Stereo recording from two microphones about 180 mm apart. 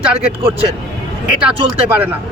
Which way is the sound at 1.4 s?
10° right (ahead or behind).